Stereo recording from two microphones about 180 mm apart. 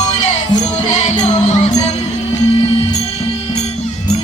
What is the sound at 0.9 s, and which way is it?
Music, 40° left (ahead or behind).